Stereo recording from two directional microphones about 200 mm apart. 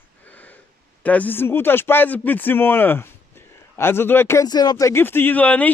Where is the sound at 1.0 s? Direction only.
10° left (ahead or behind).